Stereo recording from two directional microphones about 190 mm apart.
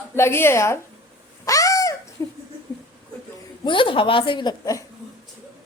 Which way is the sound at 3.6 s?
25° left (ahead or behind).